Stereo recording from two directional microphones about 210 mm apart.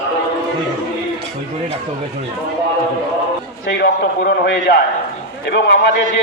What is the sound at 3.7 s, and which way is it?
A man's voice, 50° left (ahead or behind).